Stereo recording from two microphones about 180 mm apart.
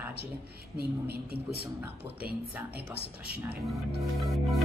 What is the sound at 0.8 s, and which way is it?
Speech, 60° right (ahead or behind).